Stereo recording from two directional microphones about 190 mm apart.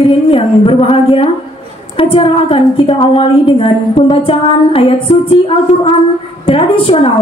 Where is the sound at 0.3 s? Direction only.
30° left (ahead or behind).